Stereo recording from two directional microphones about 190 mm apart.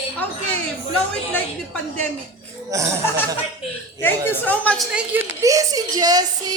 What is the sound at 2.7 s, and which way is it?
Speech, 15° right (ahead or behind).